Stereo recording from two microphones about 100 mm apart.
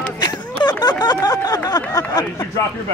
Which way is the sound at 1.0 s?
40° left (ahead or behind).